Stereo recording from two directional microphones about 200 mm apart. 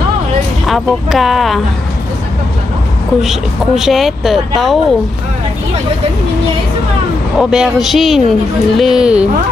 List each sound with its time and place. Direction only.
0.7 s a woman's voice: centre (ahead or behind)
3.2 s a woman's voice: centre (ahead or behind)
7.3 s a woman's voice: centre (ahead or behind)